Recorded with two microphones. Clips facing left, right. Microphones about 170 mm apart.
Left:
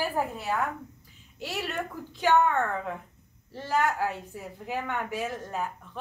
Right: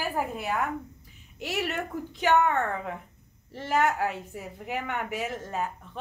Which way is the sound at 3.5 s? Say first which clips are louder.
Right 1 dB; 20° right (ahead or behind).